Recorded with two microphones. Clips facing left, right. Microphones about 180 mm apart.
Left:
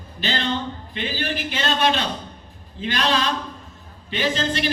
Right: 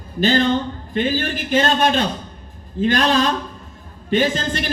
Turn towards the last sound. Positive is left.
turn(degrees=-50)  # may be behind; listen again after turning